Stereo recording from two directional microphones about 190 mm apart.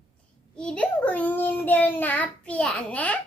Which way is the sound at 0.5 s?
5° left (ahead or behind).